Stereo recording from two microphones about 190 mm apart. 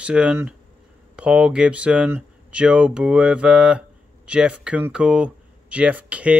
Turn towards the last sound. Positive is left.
turn(degrees=-5)  # may be behind; listen again after turning